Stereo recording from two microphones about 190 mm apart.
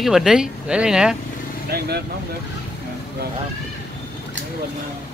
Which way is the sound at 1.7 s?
55° right (ahead or behind).